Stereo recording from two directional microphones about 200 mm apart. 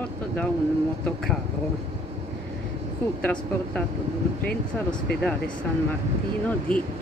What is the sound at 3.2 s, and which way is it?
Speech, 5° left (ahead or behind).